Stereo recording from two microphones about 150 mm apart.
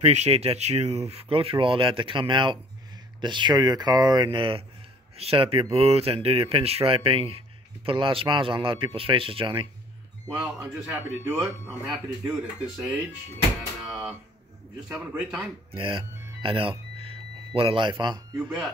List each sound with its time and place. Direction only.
0.0 s speech: 45° right (ahead or behind)
10.3 s a man's voice: 10° right (ahead or behind)
15.1 s a man's voice: 5° right (ahead or behind)
15.7 s speech: 35° right (ahead or behind)
16.4 s music: 35° right (ahead or behind)
17.6 s speech: 35° right (ahead or behind)